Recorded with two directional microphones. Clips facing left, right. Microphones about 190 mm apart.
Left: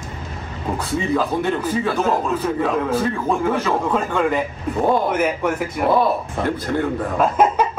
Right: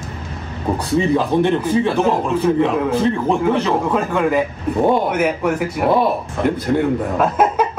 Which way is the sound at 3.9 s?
5° right (ahead or behind).